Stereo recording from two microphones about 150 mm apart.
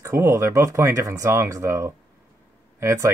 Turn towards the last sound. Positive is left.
turn(degrees=-20)  # may be behind; listen again after turning